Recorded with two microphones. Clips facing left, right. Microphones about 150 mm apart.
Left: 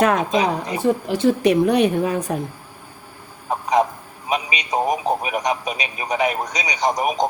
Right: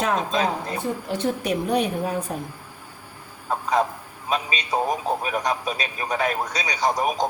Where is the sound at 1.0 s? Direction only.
90° left.